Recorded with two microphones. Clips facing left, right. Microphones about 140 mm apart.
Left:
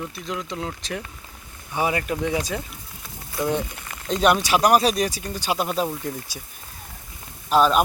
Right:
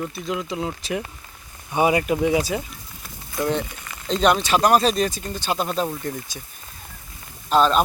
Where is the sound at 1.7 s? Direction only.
20° right (ahead or behind).